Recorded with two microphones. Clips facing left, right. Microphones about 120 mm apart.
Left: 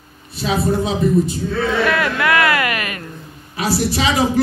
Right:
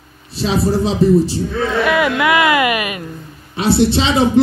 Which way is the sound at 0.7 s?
30° right (ahead or behind).